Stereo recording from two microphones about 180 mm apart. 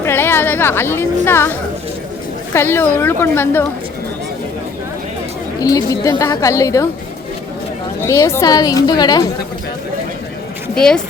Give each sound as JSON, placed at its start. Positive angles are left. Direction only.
{"t": 0.0, "sound": "a woman's voice", "side_deg": 10}
{"t": 5.5, "sound": "speech", "side_deg": 20}
{"t": 8.0, "sound": "a woman's voice", "side_deg": 15}
{"t": 10.8, "sound": "speech", "side_deg": 5}